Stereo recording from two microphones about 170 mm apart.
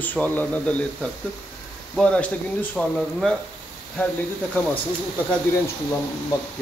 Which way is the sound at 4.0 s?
10° left (ahead or behind).